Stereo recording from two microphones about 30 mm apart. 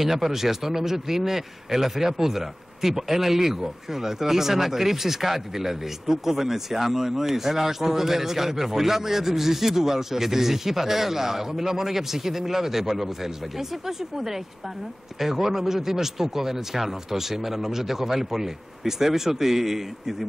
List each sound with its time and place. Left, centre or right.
0.0 s speech: centre